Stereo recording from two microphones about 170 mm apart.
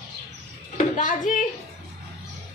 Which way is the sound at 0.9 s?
50° left (ahead or behind).